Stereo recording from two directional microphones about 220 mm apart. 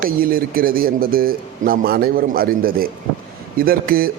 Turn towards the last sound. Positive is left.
turn(degrees=-40)  # may be behind; listen again after turning